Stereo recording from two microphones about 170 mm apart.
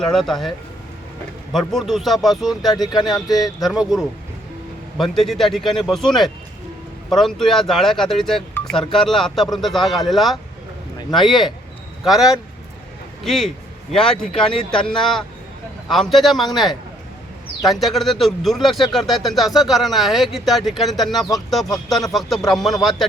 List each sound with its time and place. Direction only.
0.0 s speech: 5° left (ahead or behind)
1.5 s speech: centre (ahead or behind)
2.7 s speech: 25° left (ahead or behind)
3.4 s speech: centre (ahead or behind)
17.6 s speech: centre (ahead or behind)